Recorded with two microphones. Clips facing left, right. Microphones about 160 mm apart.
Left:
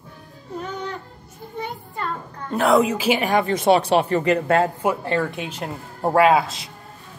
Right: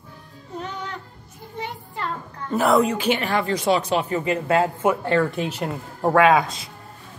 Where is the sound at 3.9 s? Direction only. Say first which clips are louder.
Left 4 dB; 65° left (ahead or behind).